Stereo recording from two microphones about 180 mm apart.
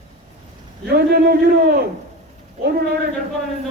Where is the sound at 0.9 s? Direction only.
60° right (ahead or behind).